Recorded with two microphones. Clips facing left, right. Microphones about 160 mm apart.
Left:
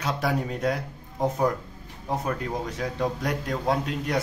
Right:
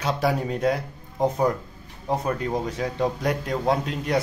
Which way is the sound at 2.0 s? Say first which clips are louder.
Right 3 dB; centre (ahead or behind).